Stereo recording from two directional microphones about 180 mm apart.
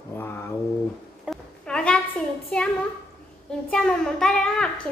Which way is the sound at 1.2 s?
Centre (ahead or behind).